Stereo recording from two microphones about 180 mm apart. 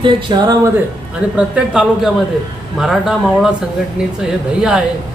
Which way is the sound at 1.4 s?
5° right (ahead or behind).